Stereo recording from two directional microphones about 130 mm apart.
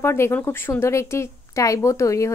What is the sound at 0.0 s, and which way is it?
A woman's voice, 20° left (ahead or behind).